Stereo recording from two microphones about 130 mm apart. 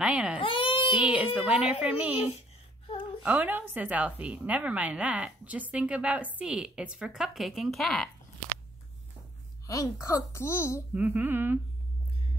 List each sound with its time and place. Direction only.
0.0 s a woman's voice: 5° right (ahead or behind)
0.4 s baby cry: 45° left (ahead or behind)
0.9 s a woman's voice: 10° right (ahead or behind)
9.7 s a woman's voice: 25° left (ahead or behind)
11.0 s a woman's voice: 10° right (ahead or behind)